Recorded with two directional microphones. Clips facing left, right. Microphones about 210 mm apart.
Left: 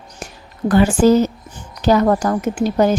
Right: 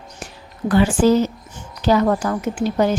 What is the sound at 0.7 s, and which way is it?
A woman's voice, 45° left (ahead or behind).